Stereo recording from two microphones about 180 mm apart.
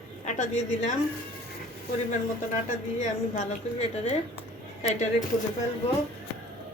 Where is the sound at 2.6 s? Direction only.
45° left (ahead or behind).